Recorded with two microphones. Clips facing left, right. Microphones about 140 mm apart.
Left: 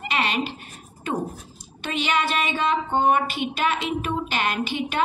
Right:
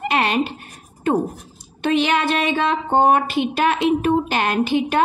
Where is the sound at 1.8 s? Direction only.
55° right (ahead or behind).